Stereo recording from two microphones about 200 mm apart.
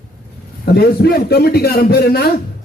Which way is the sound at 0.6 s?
50° left (ahead or behind).